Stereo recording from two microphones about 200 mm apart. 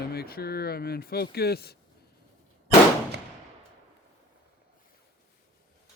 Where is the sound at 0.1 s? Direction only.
50° left (ahead or behind).